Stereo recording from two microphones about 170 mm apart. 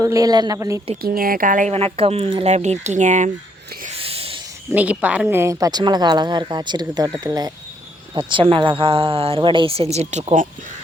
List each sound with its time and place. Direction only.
0.0 s speech: 20° right (ahead or behind)
1.0 s speech: 60° right (ahead or behind)
1.7 s a woman's voice: 35° right (ahead or behind)
3.8 s a sound: 35° right (ahead or behind)
4.7 s a woman's voice: 10° right (ahead or behind); by 10.4 s 45° right (ahead or behind)